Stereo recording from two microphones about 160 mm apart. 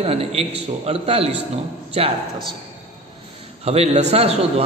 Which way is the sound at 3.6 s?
40° right (ahead or behind).